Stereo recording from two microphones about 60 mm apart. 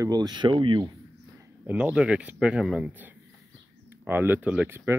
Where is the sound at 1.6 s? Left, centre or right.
Right.